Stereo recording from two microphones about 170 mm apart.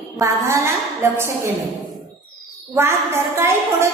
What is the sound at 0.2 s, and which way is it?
A woman's voice, 20° right (ahead or behind).